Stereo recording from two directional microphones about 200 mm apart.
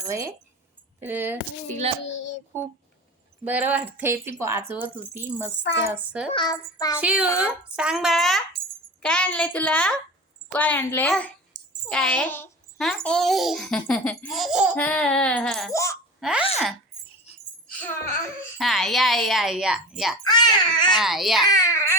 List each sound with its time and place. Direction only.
0.1 s speech: 15° right (ahead or behind)
2.0 s child singing: 65° left (ahead or behind)
3.4 s speech: 10° right (ahead or behind)
6.3 s speech: 20° left (ahead or behind)
7.0 s a child's voice: 5° right (ahead or behind)
14.8 s a child's voice: 5° left (ahead or behind)
15.7 s a child's voice: 15° left (ahead or behind)
16.2 s a child's voice: 5° right (ahead or behind)
18.5 s a child's voice: centre (ahead or behind)
20.2 s speech: 20° left (ahead or behind)
21.0 s a child's voice: centre (ahead or behind)
21.5 s a child's voice: 15° left (ahead or behind)